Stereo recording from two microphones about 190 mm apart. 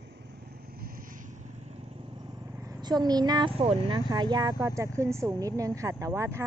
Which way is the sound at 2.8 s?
20° right (ahead or behind).